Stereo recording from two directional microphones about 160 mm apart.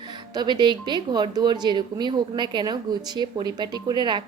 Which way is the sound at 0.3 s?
25° right (ahead or behind).